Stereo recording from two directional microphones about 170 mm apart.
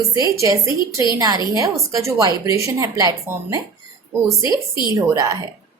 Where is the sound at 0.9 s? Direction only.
20° right (ahead or behind).